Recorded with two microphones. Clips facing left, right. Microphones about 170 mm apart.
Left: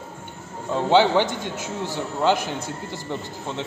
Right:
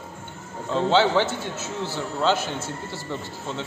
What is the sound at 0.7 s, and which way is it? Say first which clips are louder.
A man's voice: left 2 dB; 15° left (ahead or behind).